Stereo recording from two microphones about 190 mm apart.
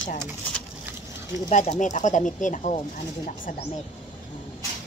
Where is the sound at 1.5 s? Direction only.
40° left (ahead or behind).